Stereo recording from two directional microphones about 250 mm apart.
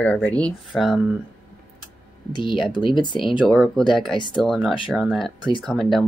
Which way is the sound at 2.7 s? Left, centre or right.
Centre.